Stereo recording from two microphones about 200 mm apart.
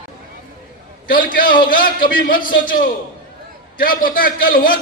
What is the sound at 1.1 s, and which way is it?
A man's voice, 45° left (ahead or behind).